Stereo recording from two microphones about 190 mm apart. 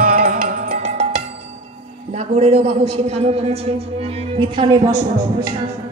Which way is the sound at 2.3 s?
35° right (ahead or behind).